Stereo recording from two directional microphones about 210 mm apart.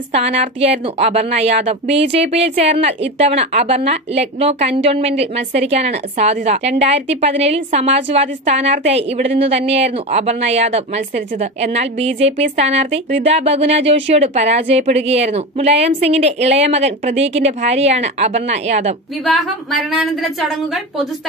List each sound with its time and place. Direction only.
0.1 s a woman's voice: 30° right (ahead or behind)
19.3 s a woman's voice: centre (ahead or behind)